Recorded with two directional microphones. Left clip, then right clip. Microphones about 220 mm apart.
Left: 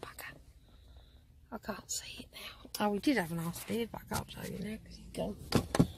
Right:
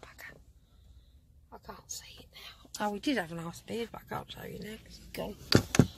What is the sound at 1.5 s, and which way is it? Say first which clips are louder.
Whispering: left 4 dB; 35° left (ahead or behind).